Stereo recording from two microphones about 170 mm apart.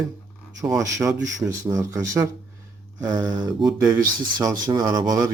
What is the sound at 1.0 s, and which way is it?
Speech, 20° right (ahead or behind).